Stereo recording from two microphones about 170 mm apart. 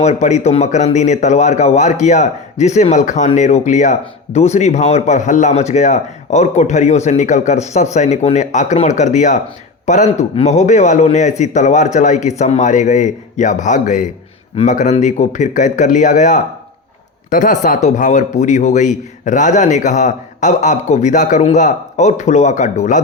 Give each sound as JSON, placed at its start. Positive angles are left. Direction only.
{"t": 0.0, "sound": "a man's voice", "side_deg": 45}